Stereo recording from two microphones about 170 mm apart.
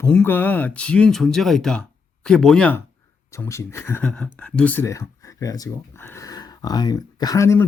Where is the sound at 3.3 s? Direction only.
15° left (ahead or behind).